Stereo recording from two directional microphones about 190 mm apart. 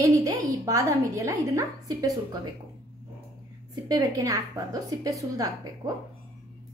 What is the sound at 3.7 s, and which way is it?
A woman's voice, 20° right (ahead or behind).